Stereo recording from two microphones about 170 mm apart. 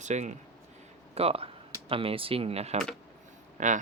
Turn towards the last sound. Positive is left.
turn(degrees=-45)  # may be behind; listen again after turning